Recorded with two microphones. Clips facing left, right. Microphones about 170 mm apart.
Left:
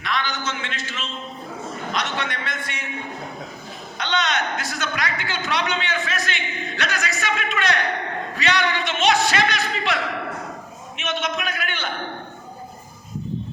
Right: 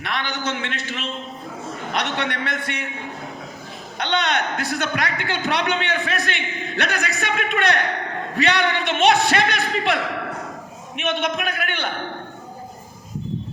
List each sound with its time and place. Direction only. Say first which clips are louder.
0.0 s a man's voice: even; 60° right (ahead or behind)
3.9 s a man's voice: right 2 dB; 60° right (ahead or behind)